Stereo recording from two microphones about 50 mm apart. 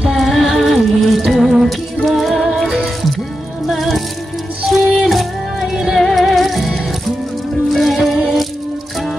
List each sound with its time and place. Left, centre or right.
0.1 s music: centre
5.0 s music: centre